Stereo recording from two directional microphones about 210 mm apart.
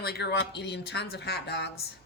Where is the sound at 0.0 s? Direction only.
50° left (ahead or behind).